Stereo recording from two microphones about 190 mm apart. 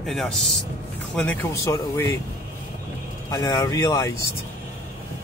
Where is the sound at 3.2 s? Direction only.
20° left (ahead or behind).